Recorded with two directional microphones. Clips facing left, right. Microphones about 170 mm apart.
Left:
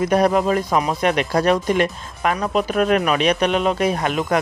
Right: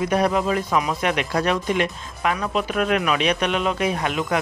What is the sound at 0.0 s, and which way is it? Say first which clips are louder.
Speech: left 4 dB; 45° left (ahead or behind).